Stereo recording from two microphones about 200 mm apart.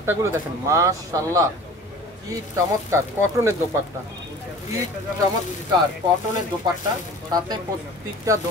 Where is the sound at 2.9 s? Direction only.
15° right (ahead or behind).